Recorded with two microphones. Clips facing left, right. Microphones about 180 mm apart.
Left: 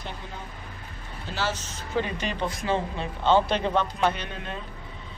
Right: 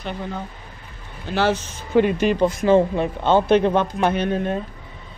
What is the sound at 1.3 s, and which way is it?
Speech, 60° right (ahead or behind).